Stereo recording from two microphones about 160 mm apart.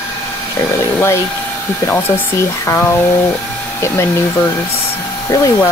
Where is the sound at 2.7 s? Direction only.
10° left (ahead or behind).